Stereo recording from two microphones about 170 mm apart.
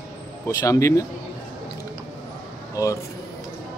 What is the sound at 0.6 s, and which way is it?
Speech, 20° left (ahead or behind).